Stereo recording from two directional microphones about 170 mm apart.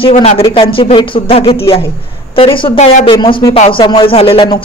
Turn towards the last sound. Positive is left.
turn(degrees=30)  # may be behind; listen again after turning